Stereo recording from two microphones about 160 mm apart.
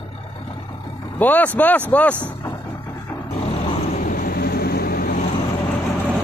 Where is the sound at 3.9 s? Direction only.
60° left (ahead or behind).